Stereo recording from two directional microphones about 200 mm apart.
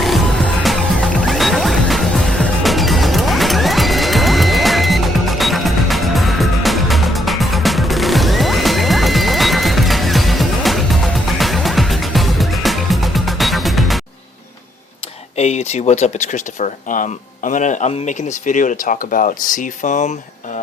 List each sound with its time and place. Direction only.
0.0 s music: centre (ahead or behind)
15.4 s speech: 35° left (ahead or behind)